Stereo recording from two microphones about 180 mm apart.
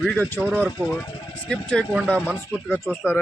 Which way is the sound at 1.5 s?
5° left (ahead or behind).